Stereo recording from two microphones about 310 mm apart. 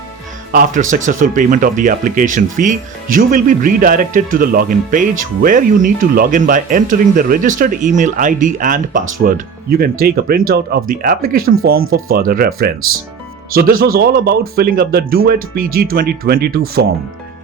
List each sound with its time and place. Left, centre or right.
0.5 s speech: right